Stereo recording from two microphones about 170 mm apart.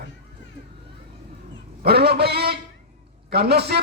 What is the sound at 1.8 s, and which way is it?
A man's voice, 70° right (ahead or behind).